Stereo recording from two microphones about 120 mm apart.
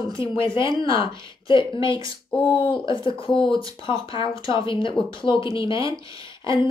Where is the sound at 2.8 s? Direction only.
45° left (ahead or behind).